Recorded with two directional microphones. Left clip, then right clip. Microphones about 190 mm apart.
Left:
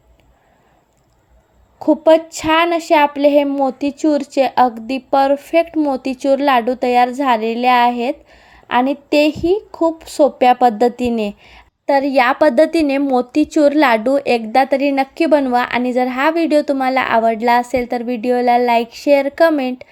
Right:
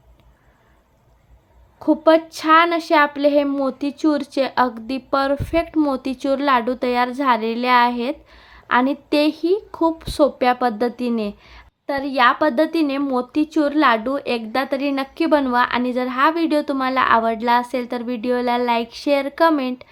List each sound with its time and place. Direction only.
1.8 s speech: 10° left (ahead or behind)
11.9 s a woman's voice: 25° left (ahead or behind)